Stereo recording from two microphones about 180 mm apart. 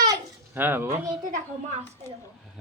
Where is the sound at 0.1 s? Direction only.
10° right (ahead or behind).